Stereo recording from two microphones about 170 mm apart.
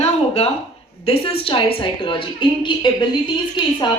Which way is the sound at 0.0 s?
35° left (ahead or behind).